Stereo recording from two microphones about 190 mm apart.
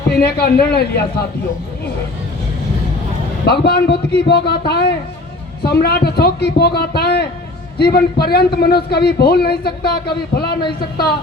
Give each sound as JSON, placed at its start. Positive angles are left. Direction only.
{"t": 0.1, "sound": "a man's voice", "side_deg": 55}
{"t": 3.4, "sound": "a man's voice", "side_deg": 60}